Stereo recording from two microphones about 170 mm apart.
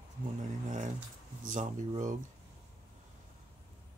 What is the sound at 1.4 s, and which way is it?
Speech, 50° right (ahead or behind).